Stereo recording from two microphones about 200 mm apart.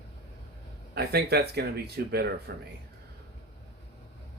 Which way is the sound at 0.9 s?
55° right (ahead or behind).